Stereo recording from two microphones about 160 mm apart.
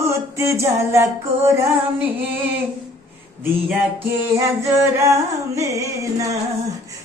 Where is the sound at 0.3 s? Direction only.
20° right (ahead or behind).